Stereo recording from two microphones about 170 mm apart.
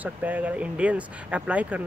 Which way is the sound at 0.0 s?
10° right (ahead or behind).